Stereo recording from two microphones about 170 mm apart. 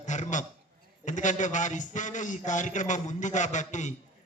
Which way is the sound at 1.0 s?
45° left (ahead or behind).